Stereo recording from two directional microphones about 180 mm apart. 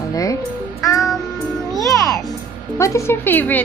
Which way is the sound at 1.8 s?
15° left (ahead or behind).